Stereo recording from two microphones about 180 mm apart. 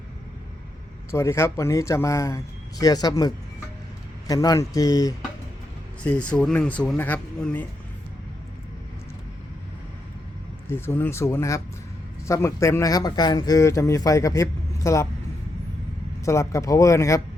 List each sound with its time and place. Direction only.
1.1 s speech: 15° left (ahead or behind)
6.0 s speech: 5° left (ahead or behind)
10.7 s speech: 10° left (ahead or behind)
16.2 s speech: 15° left (ahead or behind)